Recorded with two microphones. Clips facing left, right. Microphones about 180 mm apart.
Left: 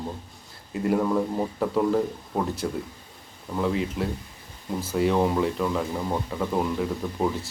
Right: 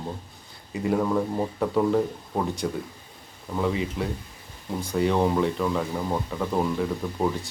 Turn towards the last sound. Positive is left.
turn(degrees=0)  # may be behind; listen again after turning